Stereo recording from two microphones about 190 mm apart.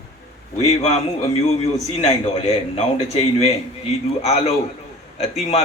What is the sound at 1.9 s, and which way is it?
A man's voice, 35° left (ahead or behind).